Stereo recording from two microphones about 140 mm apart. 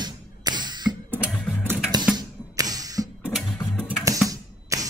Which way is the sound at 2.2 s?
25° right (ahead or behind).